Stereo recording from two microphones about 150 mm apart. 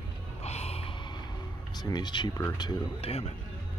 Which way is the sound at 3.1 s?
45° left (ahead or behind).